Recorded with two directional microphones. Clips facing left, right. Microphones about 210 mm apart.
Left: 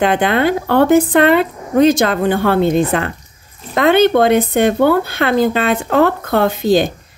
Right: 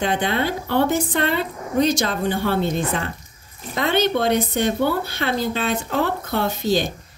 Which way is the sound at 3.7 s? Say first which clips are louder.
Left 9 dB; 60° left (ahead or behind).